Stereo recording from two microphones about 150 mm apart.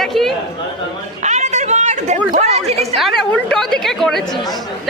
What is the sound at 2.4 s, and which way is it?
Speech, 45° right (ahead or behind).